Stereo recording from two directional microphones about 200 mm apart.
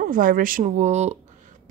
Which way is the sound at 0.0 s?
40° right (ahead or behind).